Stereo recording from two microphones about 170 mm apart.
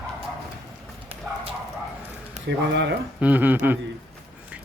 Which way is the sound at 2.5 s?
90° right.